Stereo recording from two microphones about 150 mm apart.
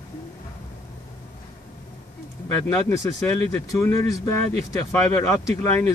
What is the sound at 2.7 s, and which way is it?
Speech, 20° left (ahead or behind).